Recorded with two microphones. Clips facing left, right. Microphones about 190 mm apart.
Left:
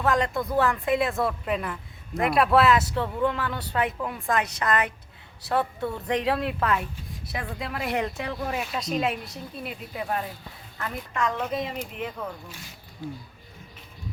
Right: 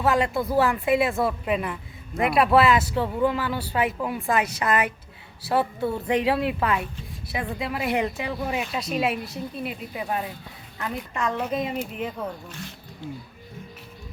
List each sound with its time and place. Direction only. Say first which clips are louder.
0.0 s a woman's voice: right 2 dB; 5° right (ahead or behind)
10.8 s a woman's voice: even; 20° right (ahead or behind)